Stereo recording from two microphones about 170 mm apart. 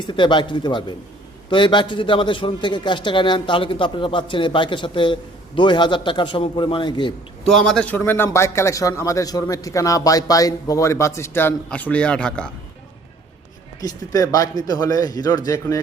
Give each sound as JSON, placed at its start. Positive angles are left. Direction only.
{"t": 0.0, "sound": "a man's voice", "side_deg": 25}
{"t": 7.4, "sound": "a man's voice", "side_deg": 5}
{"t": 13.8, "sound": "a man's voice", "side_deg": 20}